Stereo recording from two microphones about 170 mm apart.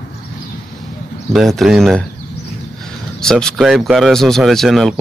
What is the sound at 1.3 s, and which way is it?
Speech, centre (ahead or behind).